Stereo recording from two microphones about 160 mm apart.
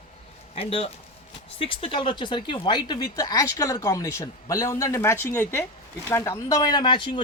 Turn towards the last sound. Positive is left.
turn(degrees=30)  # may be behind; listen again after turning